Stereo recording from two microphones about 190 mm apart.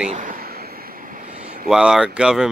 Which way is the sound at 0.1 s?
45° right (ahead or behind).